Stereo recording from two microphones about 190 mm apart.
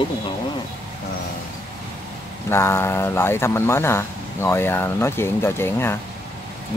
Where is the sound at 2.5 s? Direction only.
15° left (ahead or behind).